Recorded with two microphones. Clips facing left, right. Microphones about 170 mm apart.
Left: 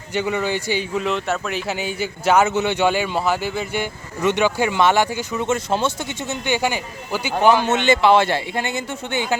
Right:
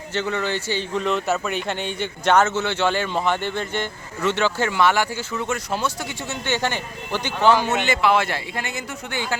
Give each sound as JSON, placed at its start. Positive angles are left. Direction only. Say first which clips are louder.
{"t": 0.1, "sound": "a man's voice", "louder": "left 3 dB", "side_deg": 10}